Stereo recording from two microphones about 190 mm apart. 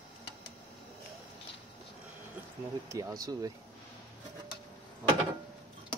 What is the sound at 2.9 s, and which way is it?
Speech, 15° right (ahead or behind).